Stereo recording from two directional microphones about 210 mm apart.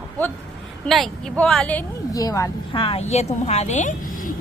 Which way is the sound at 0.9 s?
Centre (ahead or behind).